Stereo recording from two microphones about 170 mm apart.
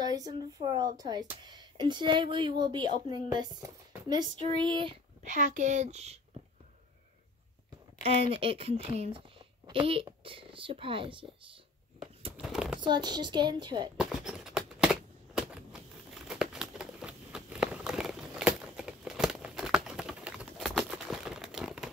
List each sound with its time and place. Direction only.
0.0 s speech: 20° right (ahead or behind)
5.2 s speech: 45° right (ahead or behind)
8.0 s speech: 35° right (ahead or behind)
12.3 s a sound: 5° right (ahead or behind)
12.8 s speech: 25° right (ahead or behind)
13.9 s a sound: 5° right (ahead or behind)